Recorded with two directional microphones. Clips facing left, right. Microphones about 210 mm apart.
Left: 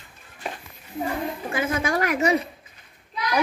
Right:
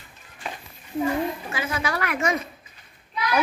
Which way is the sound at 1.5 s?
50° left (ahead or behind).